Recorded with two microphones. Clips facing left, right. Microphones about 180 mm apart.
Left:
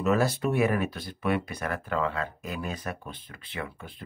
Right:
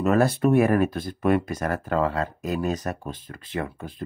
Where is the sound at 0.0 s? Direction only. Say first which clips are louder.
Right 5 dB; 55° right (ahead or behind).